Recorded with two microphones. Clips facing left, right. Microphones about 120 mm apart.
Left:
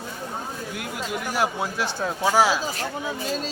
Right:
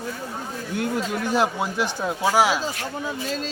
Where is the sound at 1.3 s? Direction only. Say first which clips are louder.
Right 3 dB; 20° right (ahead or behind).